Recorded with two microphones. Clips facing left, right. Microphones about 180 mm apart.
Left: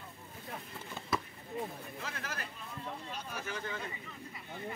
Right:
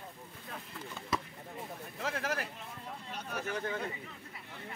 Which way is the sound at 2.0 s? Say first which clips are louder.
Right 9 dB; 75° right (ahead or behind).